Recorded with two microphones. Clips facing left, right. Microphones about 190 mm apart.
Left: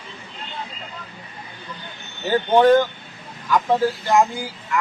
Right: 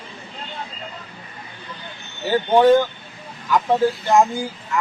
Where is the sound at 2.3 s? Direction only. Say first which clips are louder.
Even; 10° right (ahead or behind).